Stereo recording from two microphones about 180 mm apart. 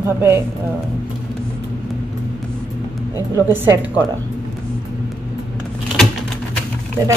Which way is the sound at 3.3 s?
15° right (ahead or behind).